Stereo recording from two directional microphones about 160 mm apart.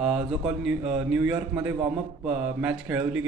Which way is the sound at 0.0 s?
5° right (ahead or behind).